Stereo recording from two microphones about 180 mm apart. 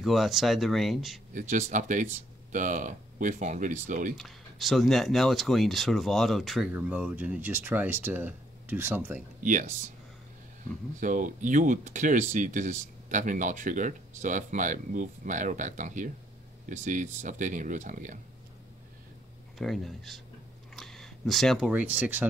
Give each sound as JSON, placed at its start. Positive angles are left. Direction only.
{"t": 0.0, "sound": "speech", "side_deg": 0}
{"t": 1.3, "sound": "speech", "side_deg": -45}
{"t": 4.2, "sound": "speech", "side_deg": 0}
{"t": 9.4, "sound": "speech", "side_deg": -45}
{"t": 11.0, "sound": "speech", "side_deg": -45}
{"t": 19.6, "sound": "speech", "side_deg": 0}